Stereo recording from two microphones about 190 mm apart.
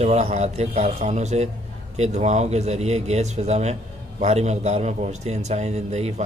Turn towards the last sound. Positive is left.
turn(degrees=-35)  # may be behind; listen again after turning